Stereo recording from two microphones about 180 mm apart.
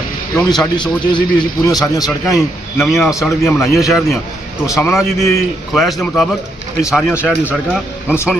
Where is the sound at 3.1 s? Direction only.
15° left (ahead or behind).